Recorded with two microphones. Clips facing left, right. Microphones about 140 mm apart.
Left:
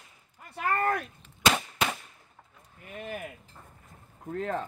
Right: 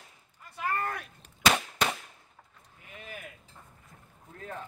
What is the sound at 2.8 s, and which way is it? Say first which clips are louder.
Speech: left 8 dB; 55° left (ahead or behind).